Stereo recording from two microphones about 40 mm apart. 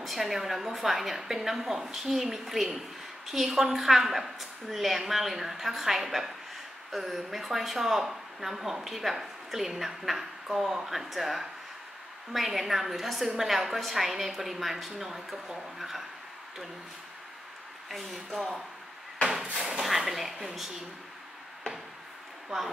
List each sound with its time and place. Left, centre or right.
0.0 s speech: centre
17.8 s speech: centre
20.1 s speech: centre